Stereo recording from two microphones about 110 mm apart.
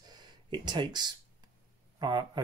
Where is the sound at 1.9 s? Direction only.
40° right (ahead or behind).